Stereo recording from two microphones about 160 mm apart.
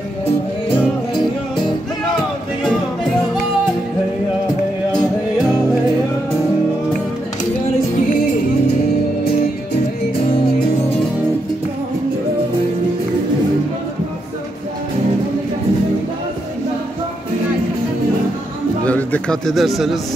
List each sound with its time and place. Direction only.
18.9 s bird: 10° left (ahead or behind)